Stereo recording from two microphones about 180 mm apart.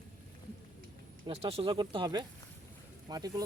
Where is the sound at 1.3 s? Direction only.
35° right (ahead or behind).